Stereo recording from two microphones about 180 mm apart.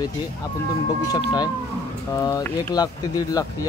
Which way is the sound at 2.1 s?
20° left (ahead or behind).